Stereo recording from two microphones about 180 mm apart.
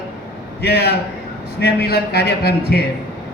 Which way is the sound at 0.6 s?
60° left (ahead or behind).